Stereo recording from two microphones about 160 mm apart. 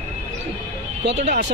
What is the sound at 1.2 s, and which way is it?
Speech, 50° right (ahead or behind).